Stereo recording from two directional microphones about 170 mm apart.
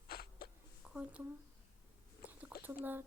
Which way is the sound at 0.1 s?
65° left (ahead or behind).